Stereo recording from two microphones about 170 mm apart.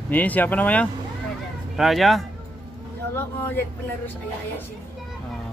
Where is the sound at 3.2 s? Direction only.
10° left (ahead or behind).